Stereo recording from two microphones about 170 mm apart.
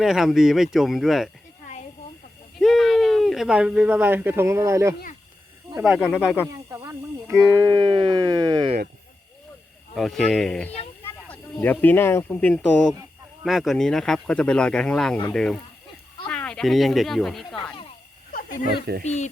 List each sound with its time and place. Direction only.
0.0 s speech: centre (ahead or behind)
2.6 s speech: centre (ahead or behind); by 4.9 s 15° right (ahead or behind)
6.0 s speech: 5° left (ahead or behind)
6.7 s snake: 20° right (ahead or behind)
7.3 s speech: 10° right (ahead or behind)
7.6 s speech: 25° right (ahead or behind)
9.9 s speech: centre (ahead or behind)
18.3 s a sound: 55° left (ahead or behind)
19.0 s speech: 45° left (ahead or behind)